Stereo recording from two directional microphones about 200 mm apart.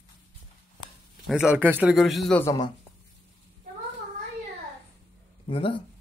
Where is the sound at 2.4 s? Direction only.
15° left (ahead or behind).